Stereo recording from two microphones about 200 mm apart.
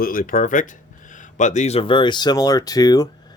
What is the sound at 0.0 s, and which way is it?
Speech, 45° left (ahead or behind).